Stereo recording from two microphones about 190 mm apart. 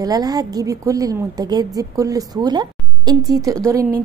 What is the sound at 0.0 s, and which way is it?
A woman's voice, 20° right (ahead or behind).